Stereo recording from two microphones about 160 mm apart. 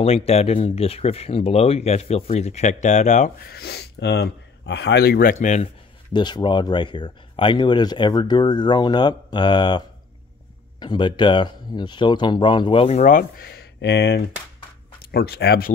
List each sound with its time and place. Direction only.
0.0 s speech: 40° left (ahead or behind)
3.4 s speech: 80° left; by 5.7 s 50° left (ahead or behind)
6.1 s speech: 25° left (ahead or behind); by 15.7 s 85° left